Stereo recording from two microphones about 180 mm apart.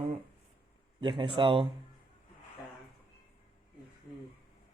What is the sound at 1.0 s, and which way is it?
Speech, 25° right (ahead or behind).